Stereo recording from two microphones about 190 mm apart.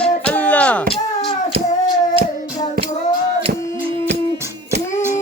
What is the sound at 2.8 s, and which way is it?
Child singing, 50° right (ahead or behind).